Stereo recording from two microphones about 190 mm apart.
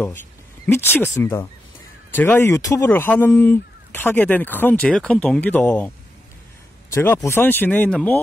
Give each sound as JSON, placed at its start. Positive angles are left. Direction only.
{"t": 0.7, "sound": "speech", "side_deg": 10}
{"t": 6.9, "sound": "speech", "side_deg": 15}